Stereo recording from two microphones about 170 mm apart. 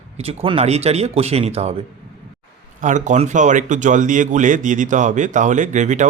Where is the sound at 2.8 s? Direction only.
45° right (ahead or behind).